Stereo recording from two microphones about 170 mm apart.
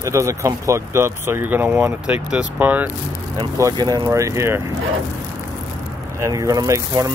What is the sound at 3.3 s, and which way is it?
Speech, 25° right (ahead or behind).